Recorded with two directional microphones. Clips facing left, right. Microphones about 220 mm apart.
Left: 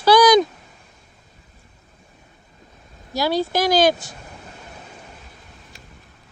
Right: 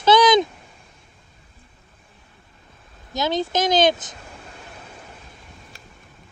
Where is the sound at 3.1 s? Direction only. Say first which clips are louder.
Left 2 dB; 20° right (ahead or behind).